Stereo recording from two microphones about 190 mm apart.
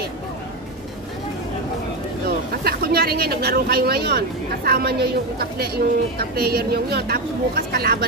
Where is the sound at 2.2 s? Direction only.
55° right (ahead or behind).